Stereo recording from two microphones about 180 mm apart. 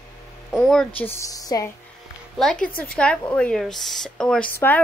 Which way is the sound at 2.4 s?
5° left (ahead or behind).